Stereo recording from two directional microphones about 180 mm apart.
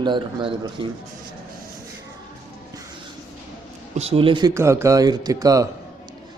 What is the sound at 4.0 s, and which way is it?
Speech, 35° right (ahead or behind).